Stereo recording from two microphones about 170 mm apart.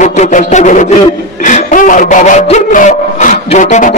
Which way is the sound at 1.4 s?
50° left (ahead or behind).